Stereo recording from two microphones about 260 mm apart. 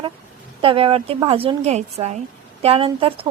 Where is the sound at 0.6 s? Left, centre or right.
Right.